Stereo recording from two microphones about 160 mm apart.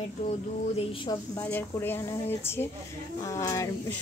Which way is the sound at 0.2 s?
40° left (ahead or behind).